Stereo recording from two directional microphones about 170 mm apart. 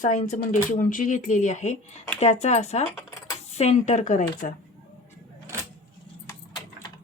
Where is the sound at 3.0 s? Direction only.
15° left (ahead or behind).